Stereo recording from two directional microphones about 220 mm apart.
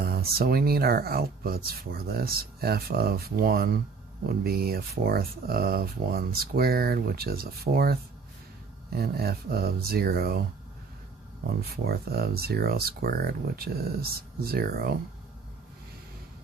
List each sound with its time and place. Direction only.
0.0 s speech: 45° right (ahead or behind)
11.4 s speech: 45° right (ahead or behind)